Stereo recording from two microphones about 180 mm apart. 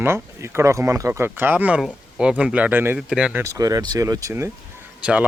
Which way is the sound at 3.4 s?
20° right (ahead or behind).